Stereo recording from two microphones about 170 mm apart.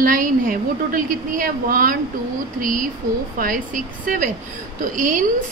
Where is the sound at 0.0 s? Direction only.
55° right (ahead or behind).